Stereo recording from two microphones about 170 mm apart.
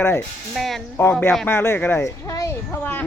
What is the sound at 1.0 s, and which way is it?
Speech, 10° left (ahead or behind).